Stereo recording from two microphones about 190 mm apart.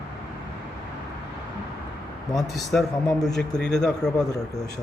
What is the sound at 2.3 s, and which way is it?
Speech, centre (ahead or behind).